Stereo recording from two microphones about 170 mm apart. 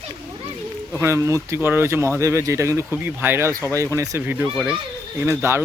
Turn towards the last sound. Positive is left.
turn(degrees=-15)  # may be behind; listen again after turning